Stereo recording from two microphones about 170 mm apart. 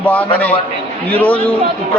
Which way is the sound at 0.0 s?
10° left (ahead or behind).